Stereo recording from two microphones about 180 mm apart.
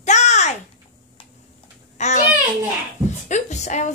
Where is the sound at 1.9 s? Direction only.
40° left (ahead or behind).